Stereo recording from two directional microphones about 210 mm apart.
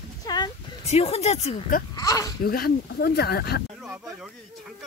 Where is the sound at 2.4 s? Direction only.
45° left (ahead or behind).